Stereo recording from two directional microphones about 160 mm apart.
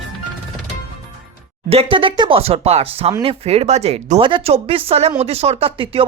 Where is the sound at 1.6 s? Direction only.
35° right (ahead or behind).